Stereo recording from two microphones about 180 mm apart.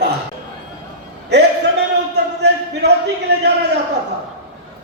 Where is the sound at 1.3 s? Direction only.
70° right (ahead or behind).